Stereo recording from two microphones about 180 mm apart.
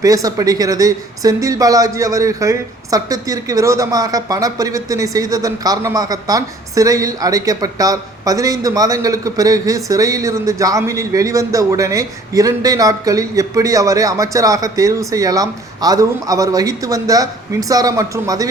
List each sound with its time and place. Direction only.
0.0 s speech: 20° right (ahead or behind)